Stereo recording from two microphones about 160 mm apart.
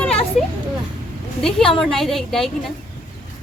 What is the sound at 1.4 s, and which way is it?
Speech, 5° left (ahead or behind).